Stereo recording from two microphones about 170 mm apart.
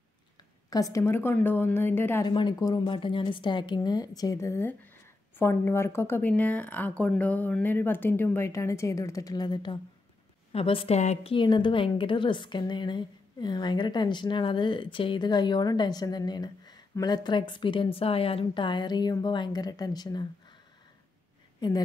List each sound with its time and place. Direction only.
0.7 s speech: 20° left (ahead or behind)
2.2 s a woman's voice: 25° left (ahead or behind)
11.3 s a woman's voice: 30° left (ahead or behind)
21.5 s speech: 25° left (ahead or behind)